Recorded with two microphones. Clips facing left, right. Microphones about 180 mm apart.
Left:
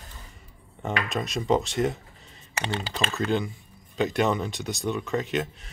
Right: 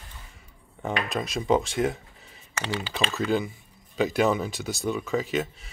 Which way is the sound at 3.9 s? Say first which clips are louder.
Right 1 dB; 5° right (ahead or behind).